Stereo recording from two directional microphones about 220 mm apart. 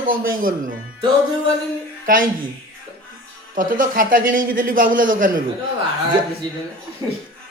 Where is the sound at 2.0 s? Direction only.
40° right (ahead or behind).